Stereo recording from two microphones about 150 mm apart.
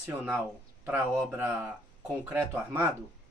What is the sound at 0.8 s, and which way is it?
Speech, 15° right (ahead or behind).